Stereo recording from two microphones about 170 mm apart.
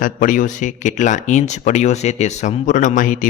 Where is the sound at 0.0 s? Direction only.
50° left (ahead or behind).